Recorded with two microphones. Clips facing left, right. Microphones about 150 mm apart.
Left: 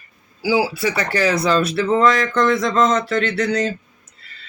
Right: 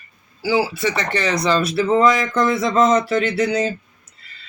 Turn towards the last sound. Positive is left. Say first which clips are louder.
# right 1 dB
turn(degrees=-5)  # may be behind; listen again after turning